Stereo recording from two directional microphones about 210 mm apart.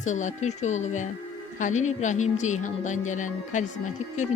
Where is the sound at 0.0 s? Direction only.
35° left (ahead or behind).